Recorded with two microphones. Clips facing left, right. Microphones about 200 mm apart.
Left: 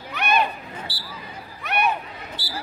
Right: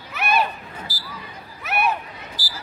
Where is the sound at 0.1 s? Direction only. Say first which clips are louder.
Even; 5° right (ahead or behind).